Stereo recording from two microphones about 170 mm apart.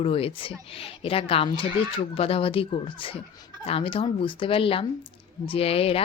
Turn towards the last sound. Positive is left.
turn(degrees=35)  # may be behind; listen again after turning